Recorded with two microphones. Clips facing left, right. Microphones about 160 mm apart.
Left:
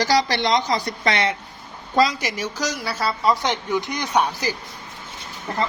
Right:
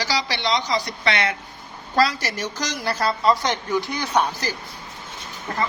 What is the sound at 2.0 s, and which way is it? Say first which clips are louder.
Speech: left 1 dB; 15° left (ahead or behind).